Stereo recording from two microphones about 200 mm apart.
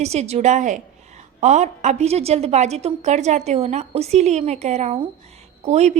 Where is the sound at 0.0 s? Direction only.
30° right (ahead or behind).